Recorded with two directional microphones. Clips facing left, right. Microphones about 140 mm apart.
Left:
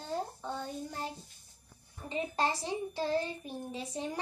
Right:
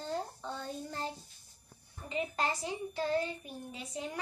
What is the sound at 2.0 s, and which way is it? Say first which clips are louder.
A child's voice: left 2 dB; 30° left (ahead or behind).